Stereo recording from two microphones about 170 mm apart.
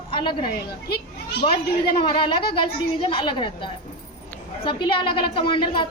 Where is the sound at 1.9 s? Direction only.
30° left (ahead or behind).